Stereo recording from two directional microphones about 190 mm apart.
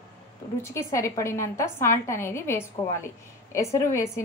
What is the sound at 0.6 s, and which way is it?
A woman's voice, 15° left (ahead or behind).